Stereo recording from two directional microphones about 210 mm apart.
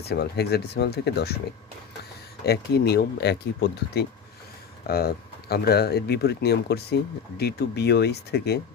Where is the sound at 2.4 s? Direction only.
50° left (ahead or behind).